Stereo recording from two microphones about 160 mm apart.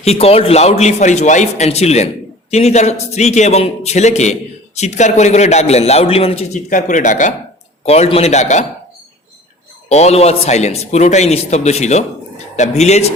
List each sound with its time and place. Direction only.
0.0 s a man's voice: 40° left (ahead or behind)
6.7 s a man's voice: 55° left (ahead or behind)
7.9 s a man's voice: 40° left (ahead or behind)
9.9 s a man's voice: 40° left (ahead or behind)